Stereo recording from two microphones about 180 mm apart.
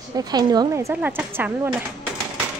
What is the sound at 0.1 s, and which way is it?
A woman's voice, 20° right (ahead or behind).